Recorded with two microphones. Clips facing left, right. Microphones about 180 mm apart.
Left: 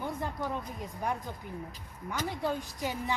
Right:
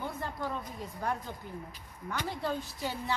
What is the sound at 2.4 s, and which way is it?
Speech, 15° left (ahead or behind).